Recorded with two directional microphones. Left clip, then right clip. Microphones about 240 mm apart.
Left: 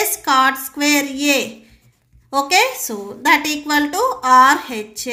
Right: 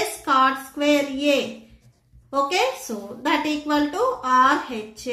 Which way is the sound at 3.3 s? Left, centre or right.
Left.